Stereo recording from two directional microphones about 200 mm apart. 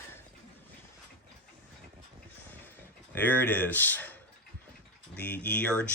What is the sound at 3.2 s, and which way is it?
Speech, 10° left (ahead or behind).